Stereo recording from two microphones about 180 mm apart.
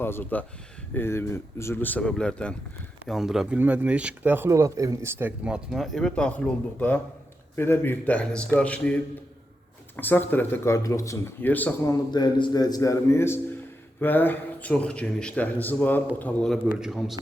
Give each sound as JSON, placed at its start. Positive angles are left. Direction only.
{"t": 0.0, "sound": "speech", "side_deg": 10}
{"t": 10.0, "sound": "speech", "side_deg": 10}